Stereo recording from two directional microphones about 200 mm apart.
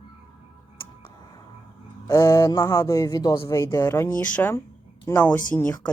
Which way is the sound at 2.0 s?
15° left (ahead or behind).